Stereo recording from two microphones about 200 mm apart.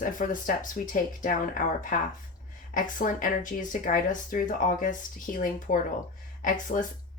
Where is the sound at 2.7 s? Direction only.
40° left (ahead or behind).